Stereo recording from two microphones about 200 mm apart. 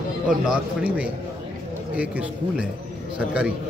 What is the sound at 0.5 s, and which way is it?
A man's voice, 5° right (ahead or behind).